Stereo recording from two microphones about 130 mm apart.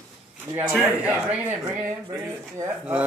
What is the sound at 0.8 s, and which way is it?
Speech, 10° right (ahead or behind).